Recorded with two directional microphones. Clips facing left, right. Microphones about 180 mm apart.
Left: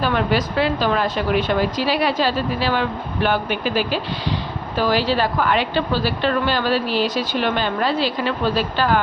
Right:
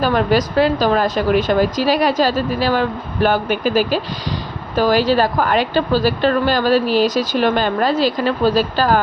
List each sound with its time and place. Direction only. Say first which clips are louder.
0.0 s speech: right 4 dB; 40° right (ahead or behind)